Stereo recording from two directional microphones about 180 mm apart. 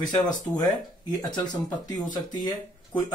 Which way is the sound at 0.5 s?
20° left (ahead or behind).